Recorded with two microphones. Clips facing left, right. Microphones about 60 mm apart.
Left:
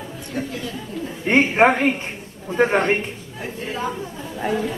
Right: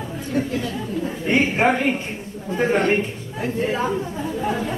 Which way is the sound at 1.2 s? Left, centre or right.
Left.